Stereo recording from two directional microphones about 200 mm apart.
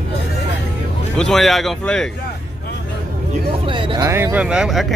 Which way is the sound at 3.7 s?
25° right (ahead or behind).